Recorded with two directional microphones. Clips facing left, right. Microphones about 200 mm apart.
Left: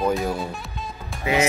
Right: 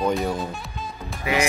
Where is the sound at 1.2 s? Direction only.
25° left (ahead or behind).